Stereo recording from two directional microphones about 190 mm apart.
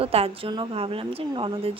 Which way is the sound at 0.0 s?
30° right (ahead or behind).